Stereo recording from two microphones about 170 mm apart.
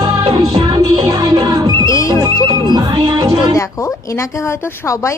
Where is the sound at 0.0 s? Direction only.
15° right (ahead or behind).